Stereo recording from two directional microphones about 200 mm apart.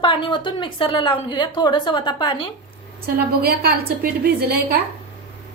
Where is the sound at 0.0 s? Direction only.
25° left (ahead or behind).